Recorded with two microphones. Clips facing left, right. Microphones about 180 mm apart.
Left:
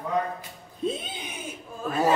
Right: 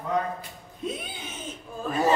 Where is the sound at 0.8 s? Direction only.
25° left (ahead or behind).